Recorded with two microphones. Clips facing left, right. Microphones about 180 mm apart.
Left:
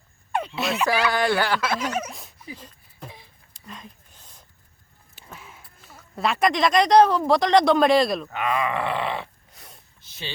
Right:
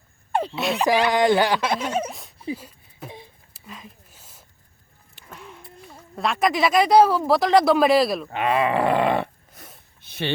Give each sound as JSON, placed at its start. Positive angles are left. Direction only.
{"t": 0.5, "sound": "speech", "side_deg": 0}
{"t": 1.1, "sound": "speech", "side_deg": -20}
{"t": 1.8, "sound": "speech", "side_deg": -30}
{"t": 2.6, "sound": "a sound", "side_deg": -10}
{"t": 6.1, "sound": "speech", "side_deg": 0}
{"t": 8.3, "sound": "a sound", "side_deg": -30}